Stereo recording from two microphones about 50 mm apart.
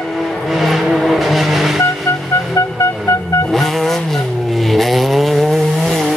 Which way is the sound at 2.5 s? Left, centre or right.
Left.